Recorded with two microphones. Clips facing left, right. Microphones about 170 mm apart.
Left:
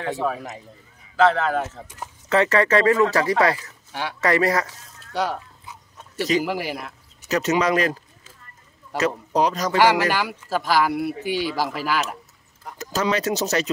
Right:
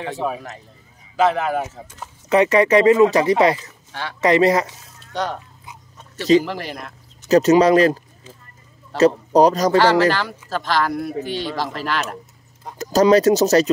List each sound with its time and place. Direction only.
0.0 s a man's voice: 15° right (ahead or behind)
5.1 s speech: 5° left (ahead or behind)
6.4 s speech: 10° left (ahead or behind)
7.2 s speech: 35° right (ahead or behind)
8.9 s speech: 35° right (ahead or behind)
9.8 s speech: 15° left (ahead or behind)
12.7 s speech: 40° right (ahead or behind)